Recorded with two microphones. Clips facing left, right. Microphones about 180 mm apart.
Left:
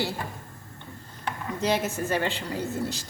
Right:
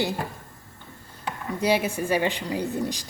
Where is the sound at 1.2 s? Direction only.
10° right (ahead or behind).